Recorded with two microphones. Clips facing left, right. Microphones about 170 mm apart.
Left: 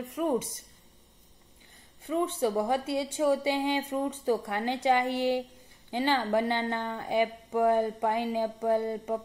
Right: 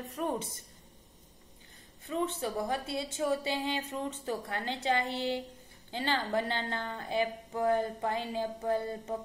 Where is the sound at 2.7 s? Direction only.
15° left (ahead or behind).